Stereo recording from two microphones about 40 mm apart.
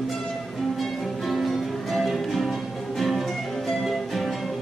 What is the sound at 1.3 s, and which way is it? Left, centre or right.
Music, centre.